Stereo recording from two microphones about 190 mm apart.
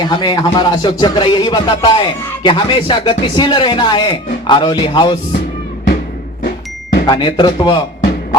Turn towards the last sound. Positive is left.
turn(degrees=25)  # may be behind; listen again after turning